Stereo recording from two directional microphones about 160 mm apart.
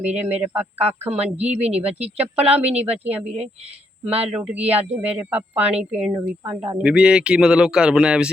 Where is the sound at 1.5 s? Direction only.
40° right (ahead or behind).